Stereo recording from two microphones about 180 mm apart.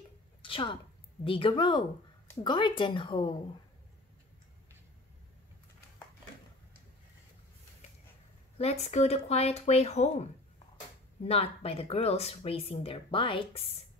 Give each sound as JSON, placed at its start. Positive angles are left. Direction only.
{"t": 0.4, "sound": "a sound", "side_deg": 30}
{"t": 1.2, "sound": "speech", "side_deg": 30}
{"t": 8.5, "sound": "speech", "side_deg": 35}
{"t": 11.2, "sound": "speech", "side_deg": 35}